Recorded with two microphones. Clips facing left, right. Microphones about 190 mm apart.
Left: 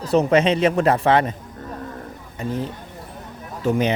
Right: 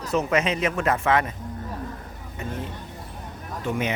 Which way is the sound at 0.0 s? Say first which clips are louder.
Left 6 dB; 35° left (ahead or behind).